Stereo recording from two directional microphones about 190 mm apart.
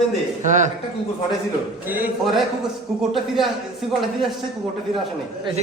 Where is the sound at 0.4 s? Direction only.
40° right (ahead or behind).